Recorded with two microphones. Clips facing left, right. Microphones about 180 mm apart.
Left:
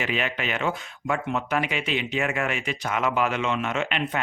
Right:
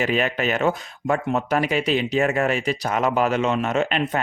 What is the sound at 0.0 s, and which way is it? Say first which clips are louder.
Speech: right 6 dB; 40° right (ahead or behind).